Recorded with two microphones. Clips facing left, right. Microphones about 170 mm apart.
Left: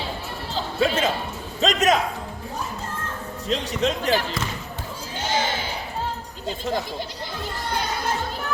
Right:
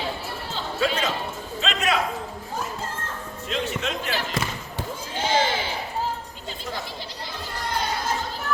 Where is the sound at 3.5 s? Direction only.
35° left (ahead or behind).